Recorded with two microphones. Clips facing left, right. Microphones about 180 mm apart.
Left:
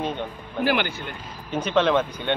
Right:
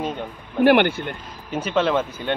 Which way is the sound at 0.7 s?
60° right (ahead or behind).